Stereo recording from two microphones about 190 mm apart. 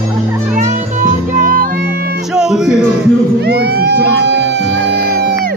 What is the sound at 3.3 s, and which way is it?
Music, 60° right (ahead or behind).